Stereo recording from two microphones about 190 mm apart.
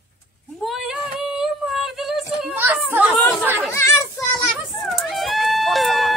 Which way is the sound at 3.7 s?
15° left (ahead or behind).